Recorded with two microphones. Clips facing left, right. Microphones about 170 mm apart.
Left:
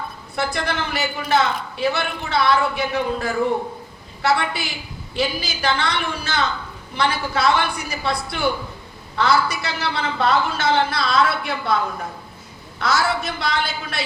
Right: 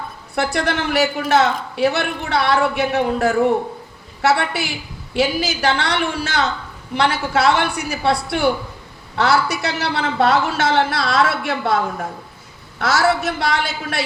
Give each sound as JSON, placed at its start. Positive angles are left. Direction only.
{"t": 0.3, "sound": "a man's voice", "side_deg": -75}
{"t": 12.8, "sound": "a man's voice", "side_deg": -75}